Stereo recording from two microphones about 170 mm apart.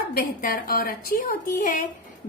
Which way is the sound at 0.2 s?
60° left (ahead or behind).